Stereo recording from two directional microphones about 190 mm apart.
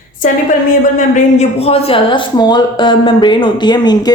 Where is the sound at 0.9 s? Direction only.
40° left (ahead or behind); by 4.1 s 20° left (ahead or behind).